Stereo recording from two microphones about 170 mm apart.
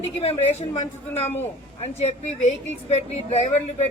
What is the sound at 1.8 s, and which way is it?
A woman's voice, 40° left (ahead or behind).